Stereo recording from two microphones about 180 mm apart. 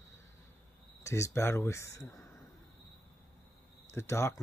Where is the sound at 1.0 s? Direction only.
15° left (ahead or behind).